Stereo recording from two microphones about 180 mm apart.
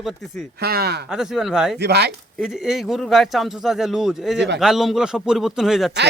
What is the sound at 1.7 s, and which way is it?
Speech, 65° right (ahead or behind).